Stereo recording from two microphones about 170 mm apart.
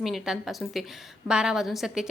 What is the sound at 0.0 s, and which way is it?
A woman's voice, centre (ahead or behind).